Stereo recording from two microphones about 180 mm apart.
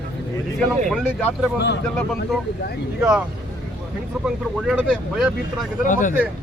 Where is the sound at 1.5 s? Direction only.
70° left (ahead or behind).